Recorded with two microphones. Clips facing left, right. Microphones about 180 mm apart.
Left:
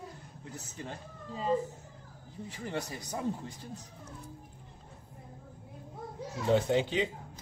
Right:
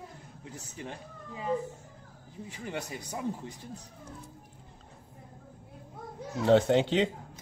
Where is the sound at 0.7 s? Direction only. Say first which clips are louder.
Right 2 dB; 20° right (ahead or behind).